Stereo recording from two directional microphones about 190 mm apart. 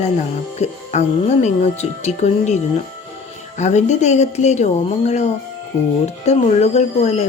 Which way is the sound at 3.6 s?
35° left (ahead or behind).